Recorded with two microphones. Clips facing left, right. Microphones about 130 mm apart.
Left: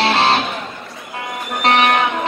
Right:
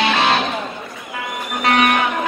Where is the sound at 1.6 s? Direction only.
30° left (ahead or behind).